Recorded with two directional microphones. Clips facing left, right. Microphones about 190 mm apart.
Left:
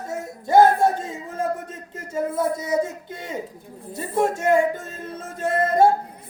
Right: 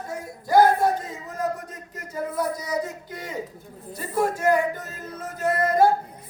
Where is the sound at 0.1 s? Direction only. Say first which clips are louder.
Left 2 dB; 25° left (ahead or behind).